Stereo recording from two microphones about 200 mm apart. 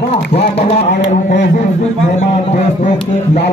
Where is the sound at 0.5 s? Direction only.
30° left (ahead or behind).